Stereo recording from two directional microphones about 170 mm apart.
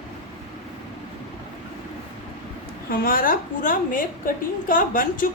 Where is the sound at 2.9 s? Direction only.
55° left (ahead or behind).